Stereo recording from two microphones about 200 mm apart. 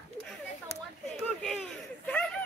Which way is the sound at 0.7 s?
30° left (ahead or behind).